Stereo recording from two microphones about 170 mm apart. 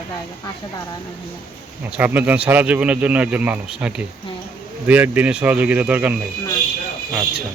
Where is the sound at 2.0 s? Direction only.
10° right (ahead or behind).